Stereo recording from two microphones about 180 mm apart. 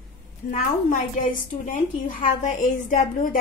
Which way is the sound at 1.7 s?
45° left (ahead or behind).